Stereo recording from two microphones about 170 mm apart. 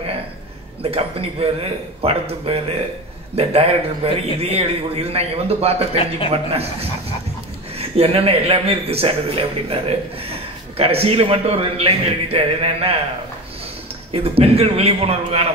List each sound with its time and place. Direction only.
0.8 s speech: 35° right (ahead or behind)
14.1 s speech: 35° right (ahead or behind)